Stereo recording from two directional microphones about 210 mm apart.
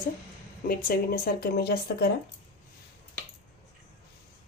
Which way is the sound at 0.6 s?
45° left (ahead or behind).